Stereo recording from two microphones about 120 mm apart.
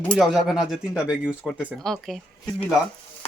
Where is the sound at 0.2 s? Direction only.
5° right (ahead or behind).